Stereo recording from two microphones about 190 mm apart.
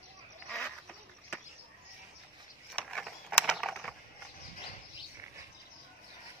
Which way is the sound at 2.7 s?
5° left (ahead or behind).